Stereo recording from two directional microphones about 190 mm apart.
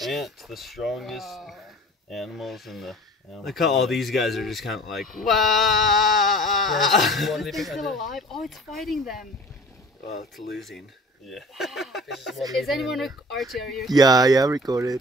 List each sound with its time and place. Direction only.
0.0 s speech: centre (ahead or behind)
11.2 s speech: centre (ahead or behind)
13.9 s speech: 20° right (ahead or behind)